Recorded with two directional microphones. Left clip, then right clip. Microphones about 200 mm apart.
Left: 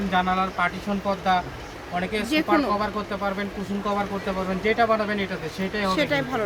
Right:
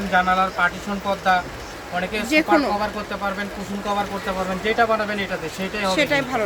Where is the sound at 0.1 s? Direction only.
5° left (ahead or behind).